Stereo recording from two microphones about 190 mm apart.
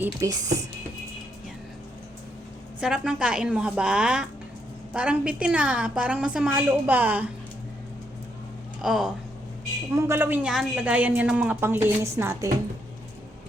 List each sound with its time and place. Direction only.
0.0 s a woman's voice: 15° right (ahead or behind)
2.8 s a woman's voice: 5° right (ahead or behind)
8.8 s a woman's voice: centre (ahead or behind)
9.9 s a woman's voice: 15° right (ahead or behind)